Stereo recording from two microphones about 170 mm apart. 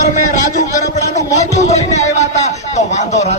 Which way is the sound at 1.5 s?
40° left (ahead or behind).